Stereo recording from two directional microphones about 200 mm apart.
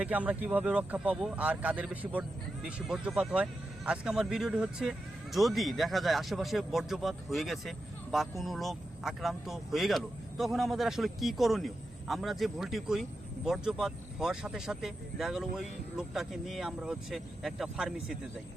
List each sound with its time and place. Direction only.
0.0 s speech: 5° right (ahead or behind)